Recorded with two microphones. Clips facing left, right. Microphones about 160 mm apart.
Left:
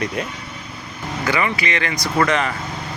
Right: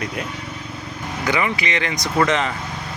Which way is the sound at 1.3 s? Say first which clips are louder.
Even; 15° right (ahead or behind).